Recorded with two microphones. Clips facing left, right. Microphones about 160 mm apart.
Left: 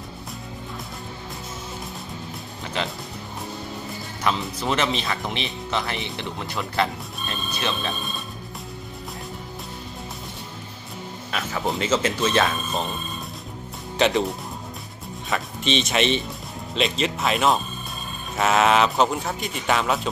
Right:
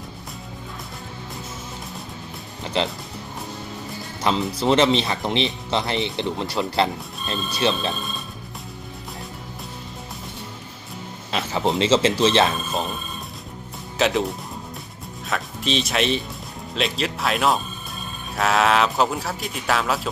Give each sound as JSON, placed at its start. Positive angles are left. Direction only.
{"t": 4.6, "sound": "speech", "side_deg": -30}
{"t": 11.3, "sound": "speech", "side_deg": -25}
{"t": 13.9, "sound": "a man's voice", "side_deg": 0}